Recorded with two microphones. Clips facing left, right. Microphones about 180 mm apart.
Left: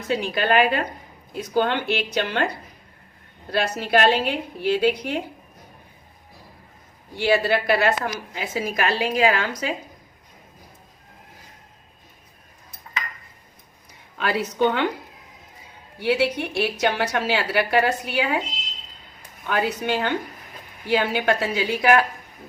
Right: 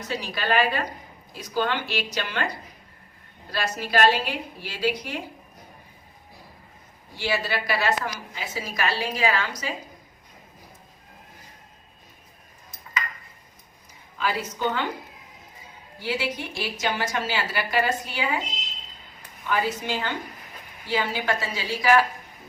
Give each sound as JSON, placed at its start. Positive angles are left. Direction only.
{"t": 0.1, "sound": "a woman's voice", "side_deg": 55}
{"t": 7.2, "sound": "a woman's voice", "side_deg": 55}
{"t": 14.2, "sound": "a woman's voice", "side_deg": 65}
{"t": 16.0, "sound": "a woman's voice", "side_deg": 65}
{"t": 19.5, "sound": "a woman's voice", "side_deg": 60}